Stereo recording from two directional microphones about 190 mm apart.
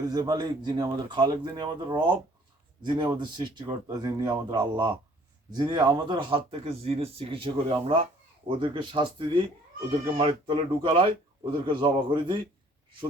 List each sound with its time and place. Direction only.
0.1 s speech: 20° right (ahead or behind)